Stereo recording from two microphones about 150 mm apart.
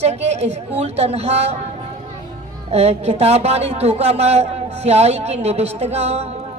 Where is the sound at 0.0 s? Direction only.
45° right (ahead or behind).